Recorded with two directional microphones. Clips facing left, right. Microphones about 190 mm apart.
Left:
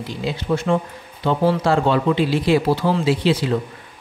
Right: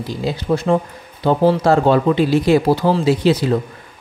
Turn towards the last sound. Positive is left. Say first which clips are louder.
# right 3 dB
turn(degrees=-40)  # may be behind; listen again after turning